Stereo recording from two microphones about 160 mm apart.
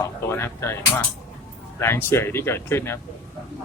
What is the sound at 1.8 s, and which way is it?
Speech, 15° left (ahead or behind).